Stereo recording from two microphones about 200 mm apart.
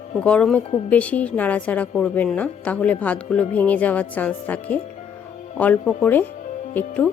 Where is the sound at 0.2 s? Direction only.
5° left (ahead or behind).